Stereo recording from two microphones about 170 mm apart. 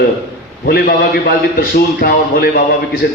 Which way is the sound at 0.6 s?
65° left (ahead or behind).